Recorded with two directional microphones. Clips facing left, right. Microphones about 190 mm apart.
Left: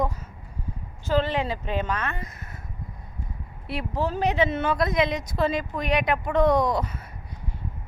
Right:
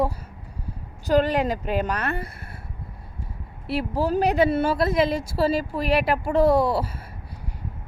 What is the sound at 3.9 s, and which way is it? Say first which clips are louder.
A woman's voice: right 3 dB; 35° right (ahead or behind).